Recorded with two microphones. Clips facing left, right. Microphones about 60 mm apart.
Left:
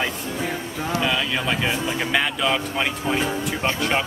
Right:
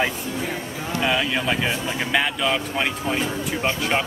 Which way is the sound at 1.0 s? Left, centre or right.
Centre.